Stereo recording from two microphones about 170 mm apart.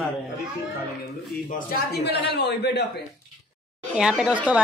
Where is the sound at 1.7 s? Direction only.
75° left (ahead or behind).